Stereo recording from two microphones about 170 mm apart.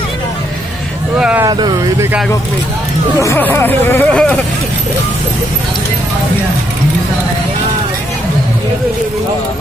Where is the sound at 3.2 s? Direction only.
15° left (ahead or behind).